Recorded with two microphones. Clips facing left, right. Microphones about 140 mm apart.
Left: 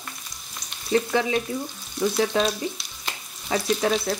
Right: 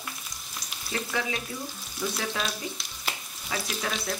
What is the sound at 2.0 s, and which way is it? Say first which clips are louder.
Frying: left 9 dB; 5° right (ahead or behind).